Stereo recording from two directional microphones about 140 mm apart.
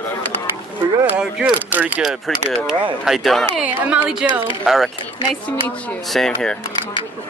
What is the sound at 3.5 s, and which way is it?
Speech, 10° right (ahead or behind).